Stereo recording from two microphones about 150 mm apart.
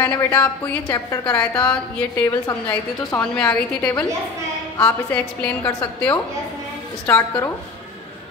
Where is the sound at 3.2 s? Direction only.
5° left (ahead or behind).